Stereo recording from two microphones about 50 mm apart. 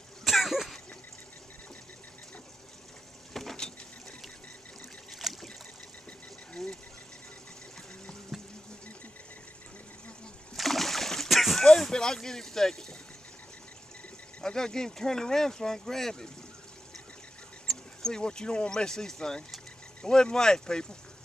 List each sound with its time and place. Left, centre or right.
0.2 s throat clearing: centre
3.3 s a sound: centre
5.2 s boat: centre
6.5 s a sound: centre
8.3 s water: centre
10.5 s splash: centre
14.4 s speech: centre
17.6 s speech: centre